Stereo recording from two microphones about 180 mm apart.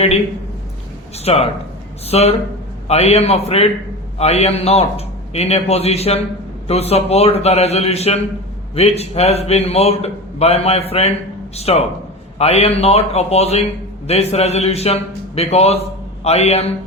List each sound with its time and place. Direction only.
1.2 s a man's voice: 35° left (ahead or behind)